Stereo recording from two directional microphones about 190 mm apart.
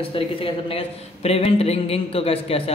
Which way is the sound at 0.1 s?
30° left (ahead or behind).